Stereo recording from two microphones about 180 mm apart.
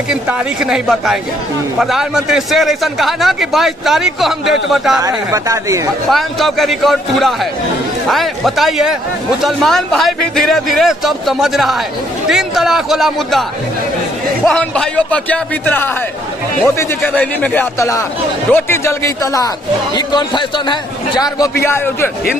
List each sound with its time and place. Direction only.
0.1 s a man's voice: 5° right (ahead or behind)
5.0 s speech: 20° right (ahead or behind)
6.0 s a man's voice: centre (ahead or behind)